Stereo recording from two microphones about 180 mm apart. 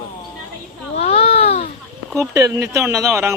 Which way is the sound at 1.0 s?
35° left (ahead or behind).